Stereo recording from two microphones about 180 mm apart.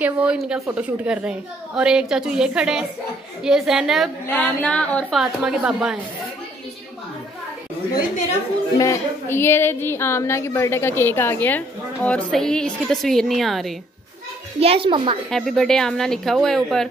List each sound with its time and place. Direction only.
0.0 s a woman's voice: 5° right (ahead or behind)
8.7 s speech: 15° left (ahead or behind); by 13.7 s centre (ahead or behind)
14.6 s a child's voice: 30° right (ahead or behind)
15.2 s a woman's voice: centre (ahead or behind)